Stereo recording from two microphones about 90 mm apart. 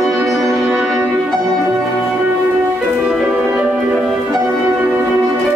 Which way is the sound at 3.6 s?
15° right (ahead or behind).